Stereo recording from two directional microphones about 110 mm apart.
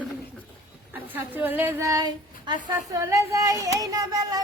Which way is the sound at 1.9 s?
35° right (ahead or behind).